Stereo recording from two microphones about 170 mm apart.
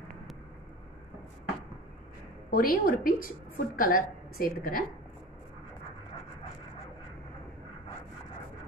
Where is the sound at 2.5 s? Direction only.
55° left (ahead or behind).